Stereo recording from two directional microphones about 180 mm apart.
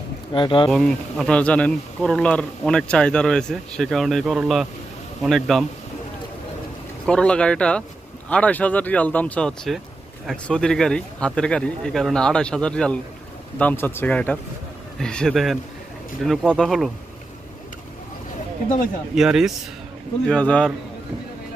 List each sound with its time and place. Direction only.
0.3 s speech: 25° left (ahead or behind)
0.7 s speech: centre (ahead or behind)
7.1 s speech: 5° left (ahead or behind)
19.1 s speech: 5° right (ahead or behind)